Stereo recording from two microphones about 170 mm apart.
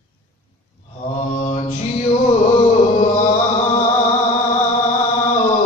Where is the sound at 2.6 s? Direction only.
45° left (ahead or behind).